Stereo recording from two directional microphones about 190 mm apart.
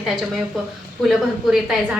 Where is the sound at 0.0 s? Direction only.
Centre (ahead or behind).